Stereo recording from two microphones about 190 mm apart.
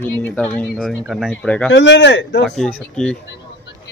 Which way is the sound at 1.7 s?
70° left (ahead or behind).